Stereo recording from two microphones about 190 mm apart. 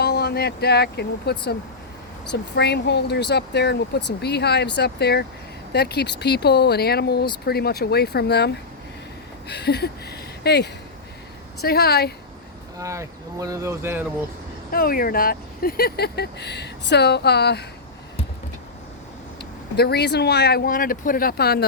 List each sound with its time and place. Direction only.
0.0 s speech: 55° left (ahead or behind)
12.8 s speech: 15° right (ahead or behind)
14.7 s speech: 50° left (ahead or behind)
19.7 s speech: 55° left (ahead or behind)